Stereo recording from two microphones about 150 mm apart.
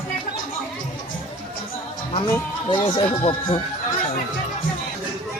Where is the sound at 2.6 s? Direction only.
35° left (ahead or behind).